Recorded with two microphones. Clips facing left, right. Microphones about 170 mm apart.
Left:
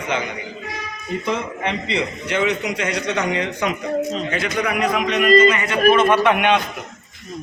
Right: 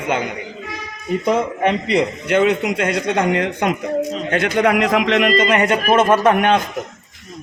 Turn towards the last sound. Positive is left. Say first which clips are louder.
# right 2 dB
turn(degrees=-40)  # may be behind; listen again after turning